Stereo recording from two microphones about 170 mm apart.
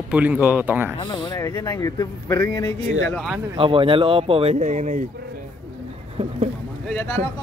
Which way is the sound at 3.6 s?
30° right (ahead or behind).